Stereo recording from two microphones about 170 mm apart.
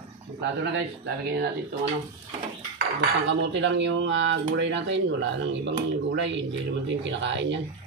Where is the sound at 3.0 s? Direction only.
90° right.